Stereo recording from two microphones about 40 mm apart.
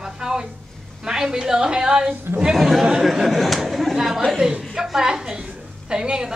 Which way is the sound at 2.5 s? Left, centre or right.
Centre.